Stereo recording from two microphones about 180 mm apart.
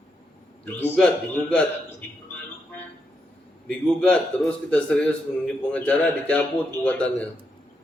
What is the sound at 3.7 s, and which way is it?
A man's voice, 5° left (ahead or behind).